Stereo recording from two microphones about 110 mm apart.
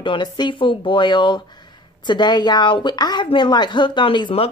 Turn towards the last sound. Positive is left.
turn(degrees=55)  # may be behind; listen again after turning